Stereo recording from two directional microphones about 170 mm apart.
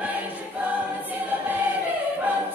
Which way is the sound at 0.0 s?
10° right (ahead or behind).